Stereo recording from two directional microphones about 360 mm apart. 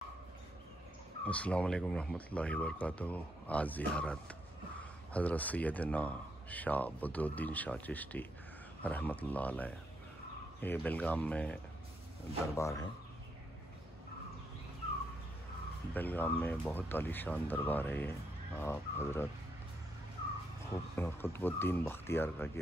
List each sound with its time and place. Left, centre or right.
1.2 s speech: centre
12.5 s speech: centre
15.9 s speech: centre
20.7 s speech: centre